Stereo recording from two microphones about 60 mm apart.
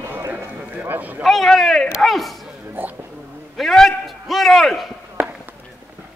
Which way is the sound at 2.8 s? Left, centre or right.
Right.